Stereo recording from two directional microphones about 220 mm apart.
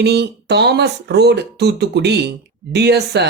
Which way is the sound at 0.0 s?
50° right (ahead or behind).